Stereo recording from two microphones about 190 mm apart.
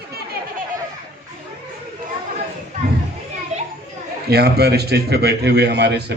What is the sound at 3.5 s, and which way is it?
Children playing, 35° right (ahead or behind).